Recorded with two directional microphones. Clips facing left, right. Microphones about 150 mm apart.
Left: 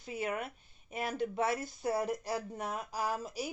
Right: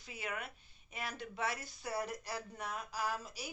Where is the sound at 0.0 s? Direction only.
50° left (ahead or behind).